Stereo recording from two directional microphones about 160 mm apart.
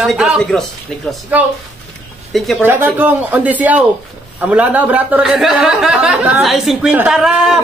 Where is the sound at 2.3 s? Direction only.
Centre (ahead or behind).